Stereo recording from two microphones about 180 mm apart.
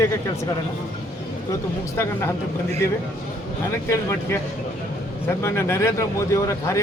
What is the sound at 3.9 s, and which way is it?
Speech, 15° left (ahead or behind).